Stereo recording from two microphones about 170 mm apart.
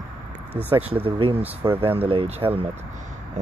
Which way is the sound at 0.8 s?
35° right (ahead or behind).